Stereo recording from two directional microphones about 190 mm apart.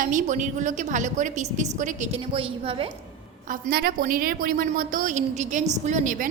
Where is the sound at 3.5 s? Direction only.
50° right (ahead or behind).